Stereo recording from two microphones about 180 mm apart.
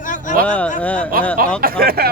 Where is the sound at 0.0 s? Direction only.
45° left (ahead or behind).